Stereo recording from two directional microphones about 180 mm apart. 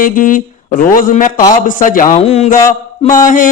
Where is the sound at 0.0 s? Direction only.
50° left (ahead or behind).